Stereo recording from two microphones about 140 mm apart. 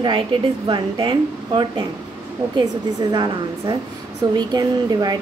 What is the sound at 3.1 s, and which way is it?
A woman's voice, 30° right (ahead or behind).